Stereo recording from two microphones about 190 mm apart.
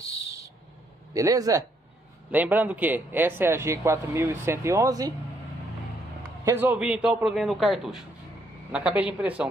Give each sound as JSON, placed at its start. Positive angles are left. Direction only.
{"t": 0.0, "sound": "a sound", "side_deg": -15}
{"t": 1.1, "sound": "speech", "side_deg": -20}
{"t": 6.4, "sound": "a man's voice", "side_deg": -10}